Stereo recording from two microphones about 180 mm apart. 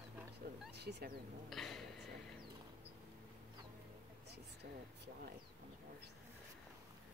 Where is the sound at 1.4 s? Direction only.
Centre (ahead or behind).